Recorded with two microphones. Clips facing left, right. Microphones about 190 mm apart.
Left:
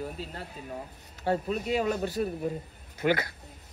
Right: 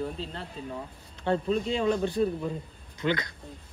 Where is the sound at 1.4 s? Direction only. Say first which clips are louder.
Right 2 dB; 25° right (ahead or behind).